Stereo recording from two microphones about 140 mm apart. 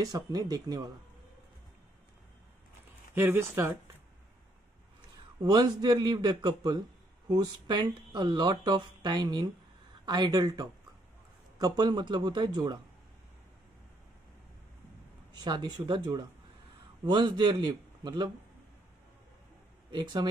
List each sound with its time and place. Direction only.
0.0 s a man's voice: 25° right (ahead or behind)
3.2 s speech: 15° right (ahead or behind)
5.4 s a man's voice: 30° right (ahead or behind)
15.4 s speech: 30° right (ahead or behind)
19.9 s speech: 35° right (ahead or behind)